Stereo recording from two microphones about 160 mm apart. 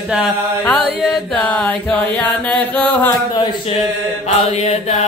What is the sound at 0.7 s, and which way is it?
Music, 5° left (ahead or behind).